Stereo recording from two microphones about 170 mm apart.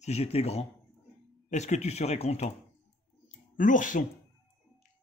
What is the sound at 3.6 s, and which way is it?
Speech, 50° left (ahead or behind).